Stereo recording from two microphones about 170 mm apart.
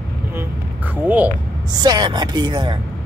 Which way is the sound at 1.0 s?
10° right (ahead or behind).